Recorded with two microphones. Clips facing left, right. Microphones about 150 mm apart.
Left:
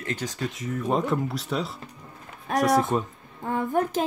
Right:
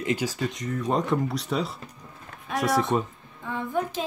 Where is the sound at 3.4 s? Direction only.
45° left (ahead or behind).